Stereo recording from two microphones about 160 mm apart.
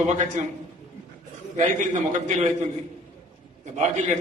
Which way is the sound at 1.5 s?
50° right (ahead or behind).